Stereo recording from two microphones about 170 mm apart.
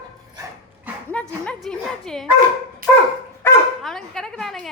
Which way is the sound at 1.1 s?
5° left (ahead or behind).